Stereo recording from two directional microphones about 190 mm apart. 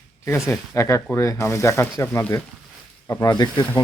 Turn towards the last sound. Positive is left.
turn(degrees=20)  # may be behind; listen again after turning